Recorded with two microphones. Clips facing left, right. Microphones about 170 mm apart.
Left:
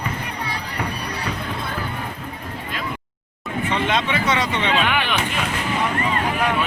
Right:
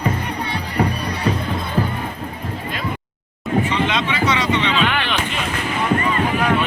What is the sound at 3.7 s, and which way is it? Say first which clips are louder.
Speech: right 1 dB; 50° left (ahead or behind).